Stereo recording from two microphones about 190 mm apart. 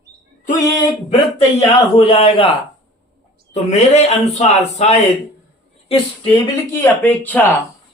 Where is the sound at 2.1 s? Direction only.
30° left (ahead or behind).